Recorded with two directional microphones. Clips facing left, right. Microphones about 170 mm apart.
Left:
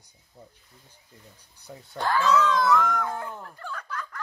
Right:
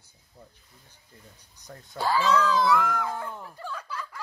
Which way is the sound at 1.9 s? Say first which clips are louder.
Left 1 dB; 5° right (ahead or behind).